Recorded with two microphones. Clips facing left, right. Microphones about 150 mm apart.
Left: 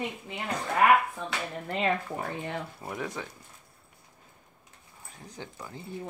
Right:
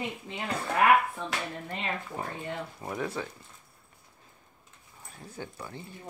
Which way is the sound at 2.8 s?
20° right (ahead or behind).